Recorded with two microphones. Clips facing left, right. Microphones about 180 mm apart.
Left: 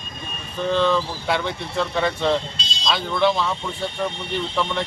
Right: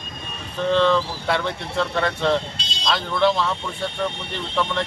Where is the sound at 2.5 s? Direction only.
60° right (ahead or behind).